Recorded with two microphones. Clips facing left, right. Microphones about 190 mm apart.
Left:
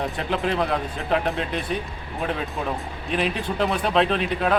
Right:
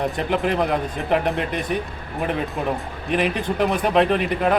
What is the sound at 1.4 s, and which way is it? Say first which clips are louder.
Speech: right 3 dB; 60° right (ahead or behind).